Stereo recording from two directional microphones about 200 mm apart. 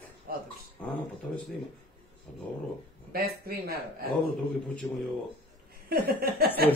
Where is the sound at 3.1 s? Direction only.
50° right (ahead or behind).